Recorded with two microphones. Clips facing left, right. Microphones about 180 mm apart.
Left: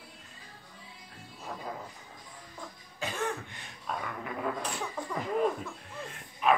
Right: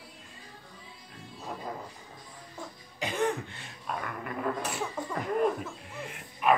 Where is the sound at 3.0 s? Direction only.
15° right (ahead or behind).